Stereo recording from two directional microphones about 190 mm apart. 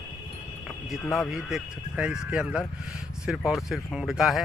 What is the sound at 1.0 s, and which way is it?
Speech, centre (ahead or behind).